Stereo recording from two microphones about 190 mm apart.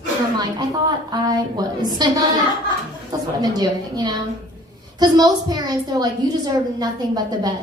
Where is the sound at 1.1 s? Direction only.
20° right (ahead or behind).